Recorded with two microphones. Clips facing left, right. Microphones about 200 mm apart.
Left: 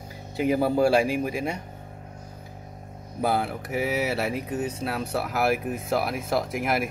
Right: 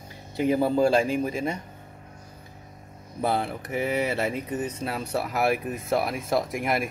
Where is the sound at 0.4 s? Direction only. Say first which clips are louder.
Even; 10° left (ahead or behind).